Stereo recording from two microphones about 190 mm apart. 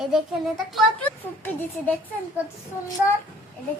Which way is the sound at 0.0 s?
Centre (ahead or behind).